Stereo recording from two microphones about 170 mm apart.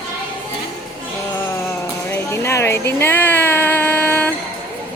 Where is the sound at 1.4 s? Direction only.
15° left (ahead or behind).